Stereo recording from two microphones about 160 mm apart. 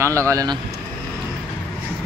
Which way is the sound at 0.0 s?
20° right (ahead or behind).